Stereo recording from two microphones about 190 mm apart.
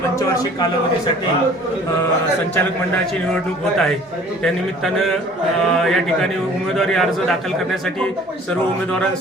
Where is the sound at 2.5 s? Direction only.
5° left (ahead or behind).